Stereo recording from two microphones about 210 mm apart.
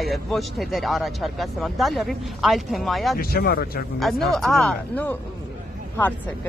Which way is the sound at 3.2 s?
45° left (ahead or behind).